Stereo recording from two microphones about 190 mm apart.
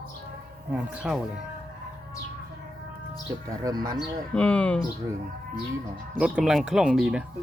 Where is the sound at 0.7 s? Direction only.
5° right (ahead or behind).